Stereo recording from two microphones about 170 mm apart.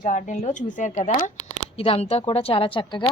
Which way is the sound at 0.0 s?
45° left (ahead or behind).